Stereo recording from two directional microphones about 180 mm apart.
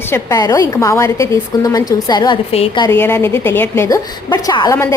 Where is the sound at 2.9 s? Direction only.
10° left (ahead or behind).